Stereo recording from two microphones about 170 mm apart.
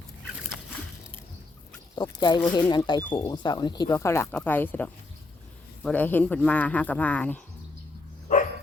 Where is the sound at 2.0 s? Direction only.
25° left (ahead or behind); by 7.4 s 10° left (ahead or behind).